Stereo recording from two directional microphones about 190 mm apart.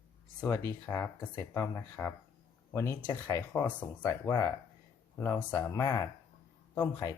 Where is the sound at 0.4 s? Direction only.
10° left (ahead or behind).